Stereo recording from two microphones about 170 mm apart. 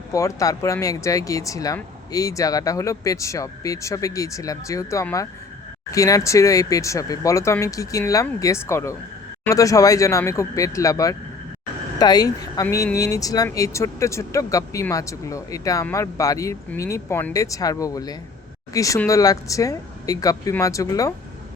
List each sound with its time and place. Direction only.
0.1 s a woman's voice: 20° left (ahead or behind)